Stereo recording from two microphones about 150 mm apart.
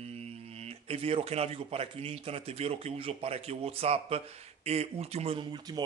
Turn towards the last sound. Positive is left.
turn(degrees=-40)  # may be behind; listen again after turning